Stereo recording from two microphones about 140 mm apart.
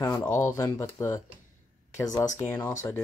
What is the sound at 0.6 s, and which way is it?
Speech, 20° left (ahead or behind).